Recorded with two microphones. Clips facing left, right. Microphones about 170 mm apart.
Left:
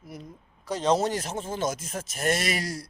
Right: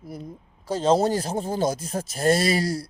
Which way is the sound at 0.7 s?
30° right (ahead or behind).